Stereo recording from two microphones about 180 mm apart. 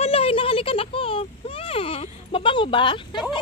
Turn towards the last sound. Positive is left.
turn(degrees=25)  # may be behind; listen again after turning